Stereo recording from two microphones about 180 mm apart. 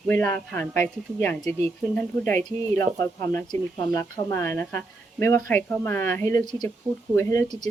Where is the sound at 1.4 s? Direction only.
35° right (ahead or behind).